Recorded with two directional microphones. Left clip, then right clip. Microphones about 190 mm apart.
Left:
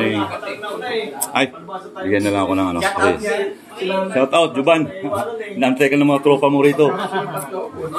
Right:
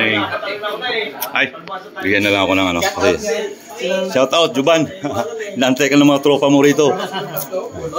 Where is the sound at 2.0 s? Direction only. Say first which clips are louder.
Right 3 dB; 10° right (ahead or behind).